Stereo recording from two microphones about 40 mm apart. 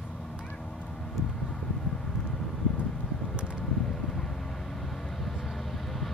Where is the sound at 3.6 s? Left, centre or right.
Centre.